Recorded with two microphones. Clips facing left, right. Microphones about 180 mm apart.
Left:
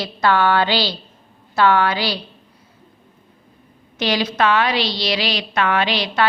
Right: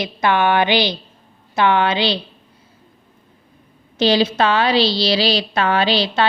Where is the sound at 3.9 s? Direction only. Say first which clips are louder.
Right 4 dB; 30° right (ahead or behind).